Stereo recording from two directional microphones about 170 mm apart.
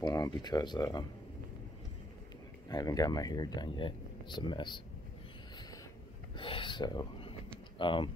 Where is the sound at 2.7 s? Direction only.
20° left (ahead or behind).